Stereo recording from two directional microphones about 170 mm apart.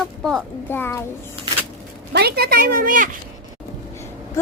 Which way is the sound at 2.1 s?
70° right (ahead or behind).